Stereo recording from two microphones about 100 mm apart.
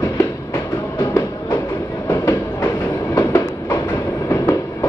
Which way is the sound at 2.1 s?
30° left (ahead or behind).